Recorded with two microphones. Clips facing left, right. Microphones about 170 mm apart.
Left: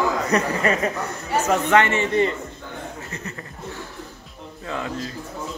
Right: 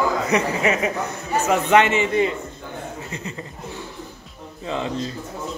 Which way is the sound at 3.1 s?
15° right (ahead or behind).